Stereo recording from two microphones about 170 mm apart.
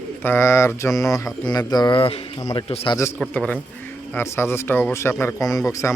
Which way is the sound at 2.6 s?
30° left (ahead or behind).